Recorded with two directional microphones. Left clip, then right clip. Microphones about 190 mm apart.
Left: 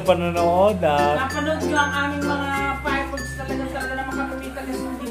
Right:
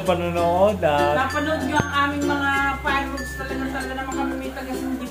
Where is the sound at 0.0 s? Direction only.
25° left (ahead or behind).